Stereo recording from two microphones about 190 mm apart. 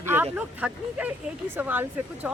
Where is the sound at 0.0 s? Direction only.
10° right (ahead or behind).